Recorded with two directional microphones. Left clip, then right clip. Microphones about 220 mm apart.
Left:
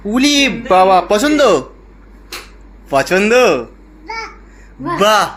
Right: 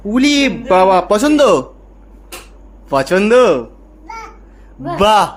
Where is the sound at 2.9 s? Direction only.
20° right (ahead or behind).